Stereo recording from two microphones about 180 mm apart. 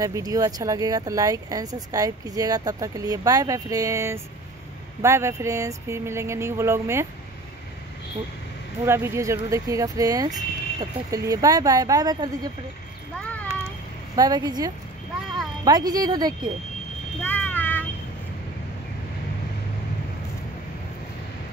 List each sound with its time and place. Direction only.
0.0 s speech: 20° right (ahead or behind)
8.8 s speech: 15° right (ahead or behind)
13.1 s a sound: 10° left (ahead or behind)
14.1 s speech: 20° right (ahead or behind)
17.2 s vehicle: 10° left (ahead or behind)